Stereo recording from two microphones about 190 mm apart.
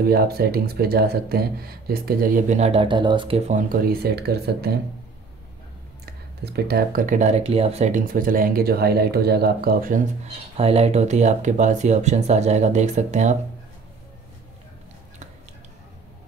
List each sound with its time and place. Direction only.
0.0 s speech: 55° right (ahead or behind)
6.0 s speech: 55° right (ahead or behind)
10.6 s speech: 30° right (ahead or behind)